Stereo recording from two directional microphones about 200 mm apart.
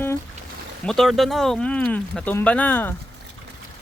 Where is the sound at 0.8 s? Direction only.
Centre (ahead or behind).